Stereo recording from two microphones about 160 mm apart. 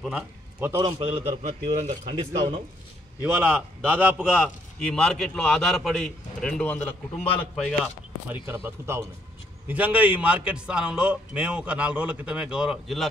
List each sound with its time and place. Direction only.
0.0 s a man's voice: 5° right (ahead or behind)
0.8 s a man's voice: 35° right (ahead or behind)
3.3 s a man's voice: 10° right (ahead or behind)
8.6 s a man's voice: 15° right (ahead or behind); by 13.1 s centre (ahead or behind)